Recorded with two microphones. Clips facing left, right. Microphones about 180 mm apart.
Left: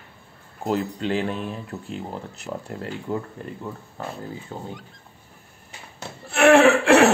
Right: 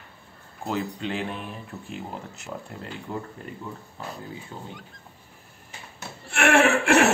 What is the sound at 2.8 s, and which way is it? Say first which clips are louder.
Speech: left 6 dB; 50° left (ahead or behind).